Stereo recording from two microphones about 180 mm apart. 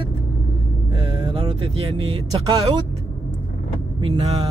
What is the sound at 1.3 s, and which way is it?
Speech, 30° right (ahead or behind).